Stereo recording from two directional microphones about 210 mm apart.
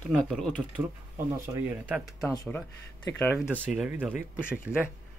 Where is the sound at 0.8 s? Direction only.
10° right (ahead or behind).